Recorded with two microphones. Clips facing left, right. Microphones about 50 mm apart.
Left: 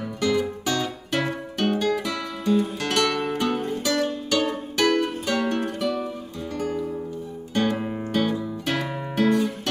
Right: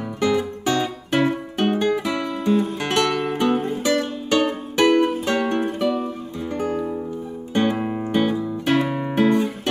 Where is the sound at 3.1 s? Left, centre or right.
Centre.